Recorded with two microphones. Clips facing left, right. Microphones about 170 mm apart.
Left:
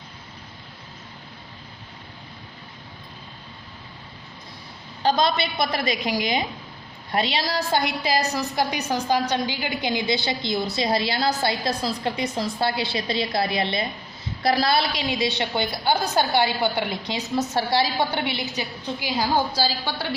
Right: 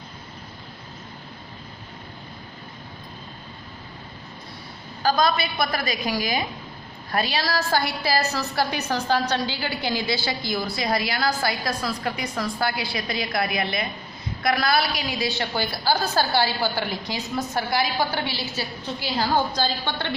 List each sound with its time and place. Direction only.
5.0 s a woman's voice: 25° left (ahead or behind); by 20.1 s 5° left (ahead or behind)